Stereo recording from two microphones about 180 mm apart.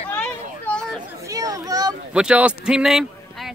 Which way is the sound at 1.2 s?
20° right (ahead or behind).